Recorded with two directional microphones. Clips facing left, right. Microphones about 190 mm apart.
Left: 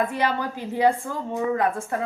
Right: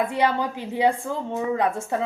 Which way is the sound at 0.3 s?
20° right (ahead or behind).